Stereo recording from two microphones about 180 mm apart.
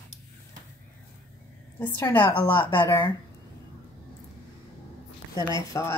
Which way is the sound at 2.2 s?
25° left (ahead or behind).